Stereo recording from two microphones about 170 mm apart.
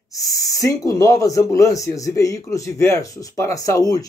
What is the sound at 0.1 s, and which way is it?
Speech, 20° left (ahead or behind).